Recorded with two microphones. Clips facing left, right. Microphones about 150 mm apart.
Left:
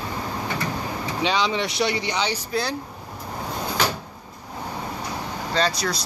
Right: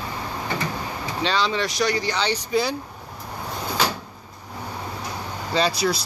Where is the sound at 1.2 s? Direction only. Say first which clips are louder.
Even; 15° left (ahead or behind).